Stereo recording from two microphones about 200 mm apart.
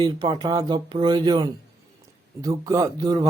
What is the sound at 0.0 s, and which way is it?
Speech, 20° right (ahead or behind).